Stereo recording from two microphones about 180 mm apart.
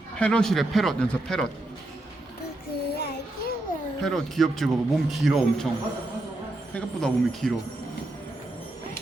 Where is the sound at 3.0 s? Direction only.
60° left (ahead or behind).